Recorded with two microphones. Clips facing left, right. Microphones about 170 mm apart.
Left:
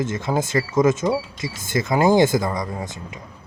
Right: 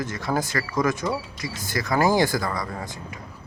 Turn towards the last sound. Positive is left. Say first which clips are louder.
# left 3 dB
turn(degrees=20)  # may be behind; listen again after turning